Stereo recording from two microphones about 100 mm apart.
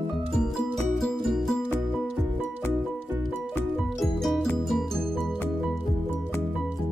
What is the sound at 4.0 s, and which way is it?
Music, centre (ahead or behind).